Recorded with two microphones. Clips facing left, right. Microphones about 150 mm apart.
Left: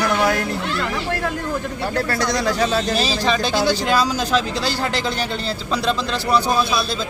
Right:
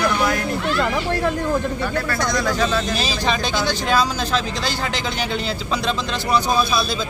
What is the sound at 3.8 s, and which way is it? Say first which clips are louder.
Speech: left 1 dB; 10° left (ahead or behind).